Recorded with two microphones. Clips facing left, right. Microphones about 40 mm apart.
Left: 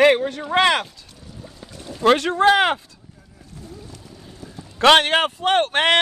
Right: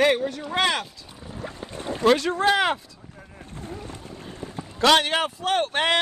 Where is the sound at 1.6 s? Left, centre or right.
Right.